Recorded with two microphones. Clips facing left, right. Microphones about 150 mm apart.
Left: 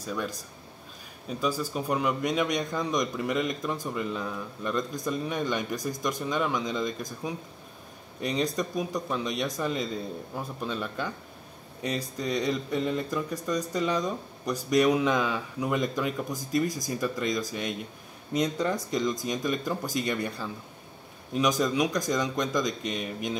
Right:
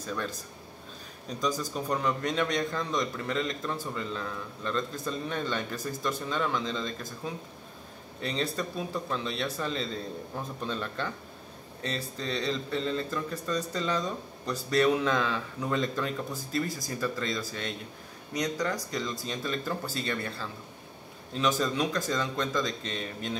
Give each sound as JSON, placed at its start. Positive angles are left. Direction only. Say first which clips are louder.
{"t": 0.0, "sound": "speech", "louder": "left 2 dB", "side_deg": 10}
{"t": 1.4, "sound": "speech", "louder": "left 2 dB", "side_deg": 10}